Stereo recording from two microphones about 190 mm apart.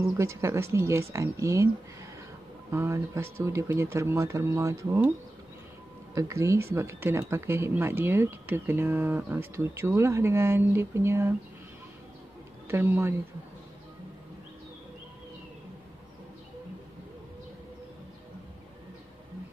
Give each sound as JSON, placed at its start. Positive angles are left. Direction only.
{"t": 0.2, "sound": "speech", "side_deg": -15}
{"t": 2.7, "sound": "speech", "side_deg": -15}
{"t": 6.1, "sound": "speech", "side_deg": -15}
{"t": 12.6, "sound": "speech", "side_deg": -10}